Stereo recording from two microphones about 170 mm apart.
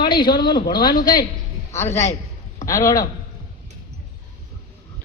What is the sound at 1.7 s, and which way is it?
A man's voice, 15° left (ahead or behind).